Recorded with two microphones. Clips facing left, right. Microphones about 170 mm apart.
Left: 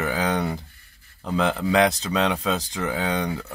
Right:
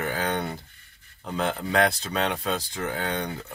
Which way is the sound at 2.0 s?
90° left.